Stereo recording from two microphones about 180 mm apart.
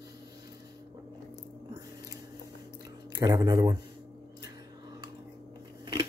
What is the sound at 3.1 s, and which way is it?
Speech, 20° right (ahead or behind).